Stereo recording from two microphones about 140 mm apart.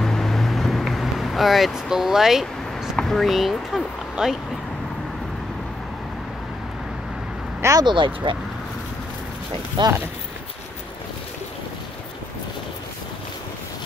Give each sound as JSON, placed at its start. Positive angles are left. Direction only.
{"t": 0.0, "sound": "vehicle", "side_deg": 5}
{"t": 7.6, "sound": "speech", "side_deg": -30}
{"t": 9.8, "sound": "speech", "side_deg": -35}